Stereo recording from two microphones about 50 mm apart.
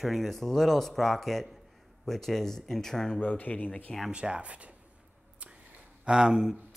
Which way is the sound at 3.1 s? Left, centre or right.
Left.